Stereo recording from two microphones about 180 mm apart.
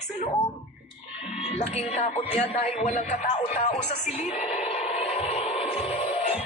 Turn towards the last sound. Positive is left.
turn(degrees=35)  # may be behind; listen again after turning